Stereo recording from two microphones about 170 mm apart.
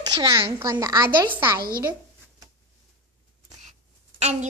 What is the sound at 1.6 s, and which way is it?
Speech, 60° right (ahead or behind).